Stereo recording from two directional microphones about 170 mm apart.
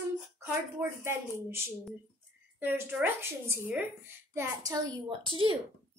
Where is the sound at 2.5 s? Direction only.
10° right (ahead or behind); by 5.5 s 30° right (ahead or behind).